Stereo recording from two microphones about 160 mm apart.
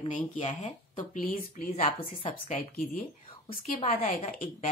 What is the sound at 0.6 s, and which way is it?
Speech, 55° left (ahead or behind).